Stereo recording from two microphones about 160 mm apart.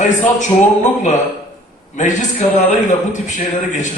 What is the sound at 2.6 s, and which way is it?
Speech, 50° left (ahead or behind).